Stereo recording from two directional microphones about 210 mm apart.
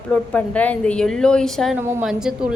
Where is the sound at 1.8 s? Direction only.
10° right (ahead or behind).